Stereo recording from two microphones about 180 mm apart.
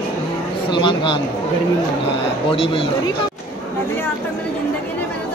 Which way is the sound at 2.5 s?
30° left (ahead or behind).